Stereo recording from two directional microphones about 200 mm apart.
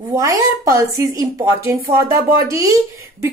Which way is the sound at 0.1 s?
15° right (ahead or behind).